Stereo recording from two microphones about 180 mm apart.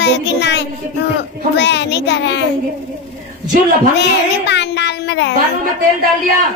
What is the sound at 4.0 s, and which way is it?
Speech, 70° left (ahead or behind).